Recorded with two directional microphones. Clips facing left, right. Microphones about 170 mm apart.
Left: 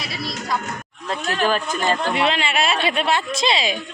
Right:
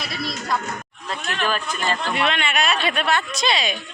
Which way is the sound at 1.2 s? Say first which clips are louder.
Left 4 dB; 40° left (ahead or behind).